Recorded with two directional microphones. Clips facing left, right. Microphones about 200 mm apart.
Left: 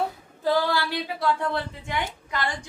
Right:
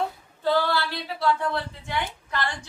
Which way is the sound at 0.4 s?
10° left (ahead or behind).